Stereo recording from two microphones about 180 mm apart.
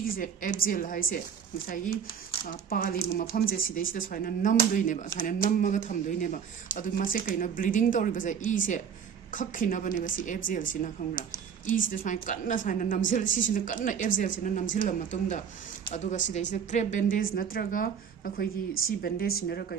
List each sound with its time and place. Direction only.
0.0 s speech: 50° left (ahead or behind)
18.9 s a woman's voice: 55° left (ahead or behind)